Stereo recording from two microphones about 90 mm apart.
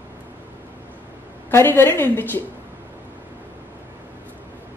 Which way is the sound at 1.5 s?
25° left (ahead or behind).